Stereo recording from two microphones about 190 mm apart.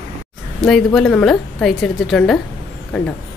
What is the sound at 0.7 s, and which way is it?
A woman's voice, 5° left (ahead or behind).